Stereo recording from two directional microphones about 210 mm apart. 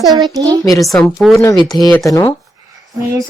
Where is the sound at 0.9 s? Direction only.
Centre (ahead or behind).